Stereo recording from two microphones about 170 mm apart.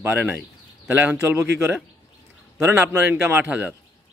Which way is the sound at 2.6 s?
15° right (ahead or behind).